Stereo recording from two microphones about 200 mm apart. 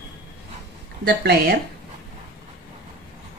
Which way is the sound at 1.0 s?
55° right (ahead or behind).